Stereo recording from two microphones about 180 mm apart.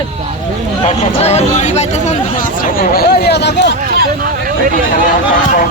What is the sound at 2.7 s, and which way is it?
Speech, 55° left (ahead or behind).